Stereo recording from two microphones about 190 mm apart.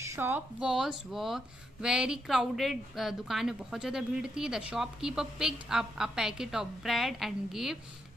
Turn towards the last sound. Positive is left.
turn(degrees=0)  # may be behind; listen again after turning